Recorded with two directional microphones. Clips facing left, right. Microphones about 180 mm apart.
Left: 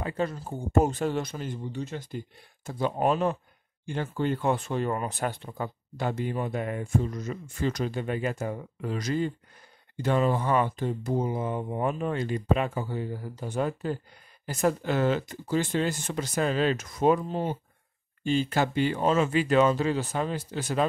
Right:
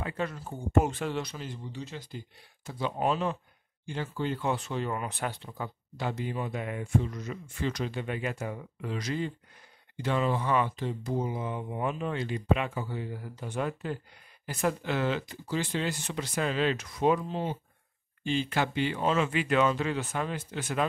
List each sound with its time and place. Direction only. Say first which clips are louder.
0.0 s speech: left 4 dB; 35° left (ahead or behind)